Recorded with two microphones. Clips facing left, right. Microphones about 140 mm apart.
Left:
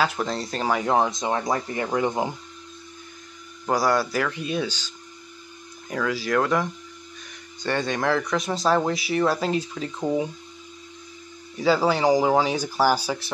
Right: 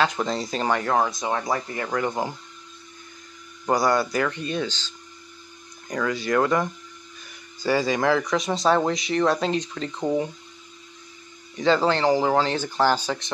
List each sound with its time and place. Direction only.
0.0 s speech: 5° left (ahead or behind)
0.8 s speech: 25° left (ahead or behind)
3.6 s speech: centre (ahead or behind)
11.5 s speech: 5° left (ahead or behind)